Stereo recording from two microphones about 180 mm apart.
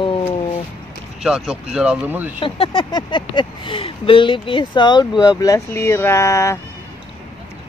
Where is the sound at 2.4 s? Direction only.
30° left (ahead or behind).